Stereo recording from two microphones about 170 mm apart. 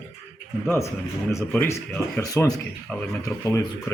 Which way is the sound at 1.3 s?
15° left (ahead or behind).